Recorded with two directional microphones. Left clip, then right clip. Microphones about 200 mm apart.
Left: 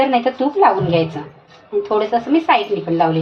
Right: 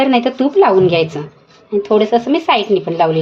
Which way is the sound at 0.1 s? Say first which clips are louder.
Right 3 dB; 55° right (ahead or behind).